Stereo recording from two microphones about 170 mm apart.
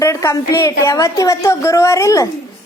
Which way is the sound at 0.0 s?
15° left (ahead or behind).